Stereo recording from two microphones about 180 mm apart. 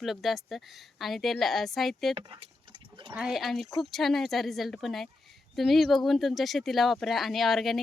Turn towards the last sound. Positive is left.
turn(degrees=0)  # may be behind; listen again after turning